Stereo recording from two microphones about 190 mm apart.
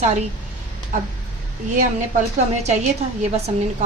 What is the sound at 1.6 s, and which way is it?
A woman's voice, 40° right (ahead or behind).